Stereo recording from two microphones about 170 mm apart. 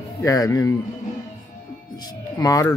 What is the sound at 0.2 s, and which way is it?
Speech, 20° left (ahead or behind).